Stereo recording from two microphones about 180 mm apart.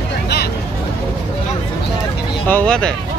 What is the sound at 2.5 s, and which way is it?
Speech, 5° left (ahead or behind).